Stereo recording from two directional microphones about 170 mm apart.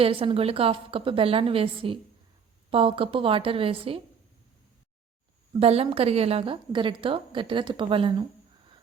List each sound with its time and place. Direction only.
0.0 s a woman's voice: 30° right (ahead or behind)
5.5 s a woman's voice: 35° right (ahead or behind)